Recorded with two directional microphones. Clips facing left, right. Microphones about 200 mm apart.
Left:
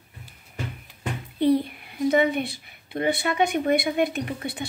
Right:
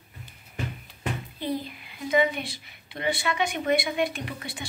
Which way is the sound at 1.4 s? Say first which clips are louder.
Left 11 dB; 65° left (ahead or behind).